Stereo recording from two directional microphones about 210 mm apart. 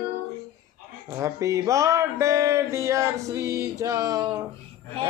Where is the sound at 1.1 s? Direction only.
15° right (ahead or behind).